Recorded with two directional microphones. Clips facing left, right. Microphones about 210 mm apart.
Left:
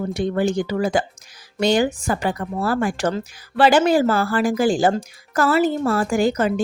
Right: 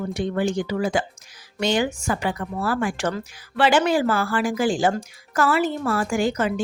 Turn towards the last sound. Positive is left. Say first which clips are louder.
# left 3 dB
turn(degrees=40)  # may be behind; listen again after turning